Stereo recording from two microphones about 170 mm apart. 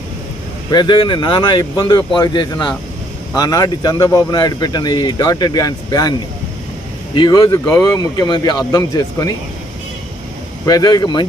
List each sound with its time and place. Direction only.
0.7 s speech: 25° left (ahead or behind)
7.2 s speech: 20° left (ahead or behind)
10.6 s speech: 25° left (ahead or behind)